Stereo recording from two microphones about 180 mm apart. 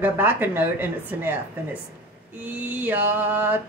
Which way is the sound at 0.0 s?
10° right (ahead or behind).